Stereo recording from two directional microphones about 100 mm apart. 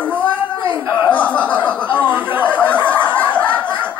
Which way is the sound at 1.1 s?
15° left (ahead or behind).